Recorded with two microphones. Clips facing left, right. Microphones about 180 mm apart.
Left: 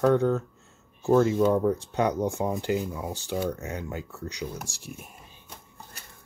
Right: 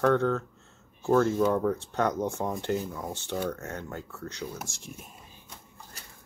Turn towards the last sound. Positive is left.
turn(degrees=10)  # may be behind; listen again after turning